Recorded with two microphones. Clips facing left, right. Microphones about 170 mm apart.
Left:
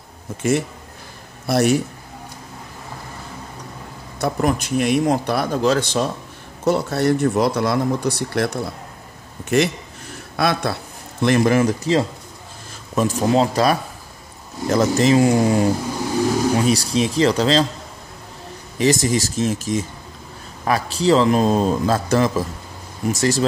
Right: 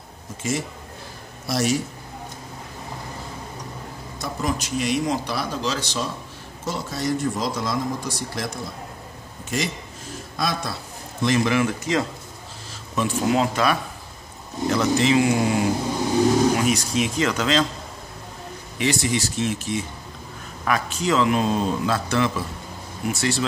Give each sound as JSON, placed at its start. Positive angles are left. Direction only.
{"t": 0.4, "sound": "speech", "side_deg": 60}
{"t": 4.2, "sound": "speech", "side_deg": 55}
{"t": 11.2, "sound": "a man's voice", "side_deg": 50}
{"t": 18.8, "sound": "a man's voice", "side_deg": 40}